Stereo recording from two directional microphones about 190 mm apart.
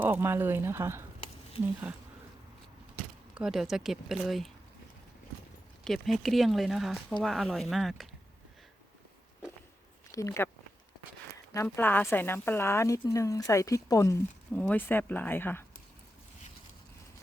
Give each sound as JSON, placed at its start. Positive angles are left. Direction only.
{"t": 0.0, "sound": "speech", "side_deg": -10}
{"t": 3.3, "sound": "speech", "side_deg": 0}
{"t": 5.8, "sound": "speech", "side_deg": 0}
{"t": 10.1, "sound": "speech", "side_deg": 15}
{"t": 11.5, "sound": "a woman's voice", "side_deg": 10}